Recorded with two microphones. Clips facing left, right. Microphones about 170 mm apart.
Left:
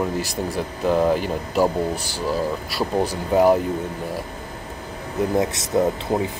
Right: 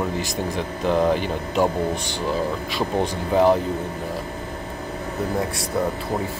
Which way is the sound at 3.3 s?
10° left (ahead or behind).